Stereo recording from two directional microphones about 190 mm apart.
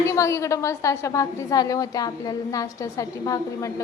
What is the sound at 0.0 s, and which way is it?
A woman's voice, 15° left (ahead or behind).